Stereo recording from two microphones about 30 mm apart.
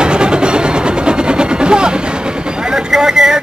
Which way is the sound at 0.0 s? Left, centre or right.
Right.